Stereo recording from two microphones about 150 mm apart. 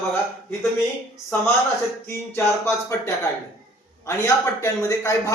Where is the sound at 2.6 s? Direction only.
20° left (ahead or behind).